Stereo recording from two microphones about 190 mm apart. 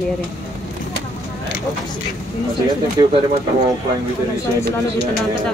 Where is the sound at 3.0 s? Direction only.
20° right (ahead or behind).